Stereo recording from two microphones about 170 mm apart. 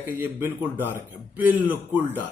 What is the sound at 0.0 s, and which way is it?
Speech, 10° right (ahead or behind).